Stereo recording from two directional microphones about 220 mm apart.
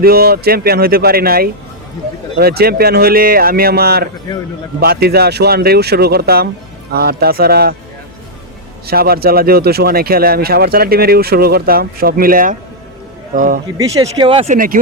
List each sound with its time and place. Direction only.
0.0 s speech: 45° right (ahead or behind)
8.9 s speech: 45° right (ahead or behind)
13.7 s speech: 15° right (ahead or behind); by 14.8 s 35° right (ahead or behind)